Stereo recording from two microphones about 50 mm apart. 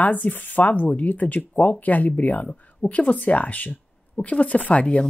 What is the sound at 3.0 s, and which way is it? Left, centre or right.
Speech, left.